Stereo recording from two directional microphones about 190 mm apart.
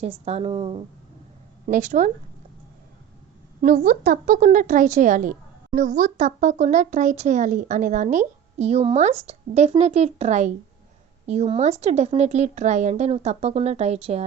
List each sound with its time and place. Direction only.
0.0 s speech: 35° right (ahead or behind)
1.6 s a woman's voice: 40° right (ahead or behind)
3.6 s a woman's voice: 45° right (ahead or behind)